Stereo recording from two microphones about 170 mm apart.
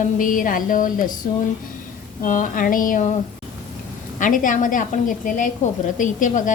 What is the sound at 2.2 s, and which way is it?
Speech, 50° left (ahead or behind).